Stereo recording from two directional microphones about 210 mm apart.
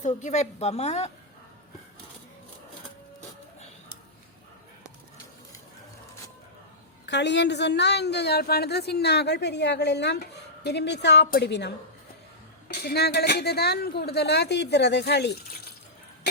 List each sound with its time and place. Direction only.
0.0 s a woman's voice: 35° left (ahead or behind)
7.0 s a woman's voice: 55° left (ahead or behind)